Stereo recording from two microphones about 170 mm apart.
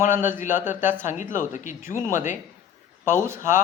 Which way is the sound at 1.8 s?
15° right (ahead or behind).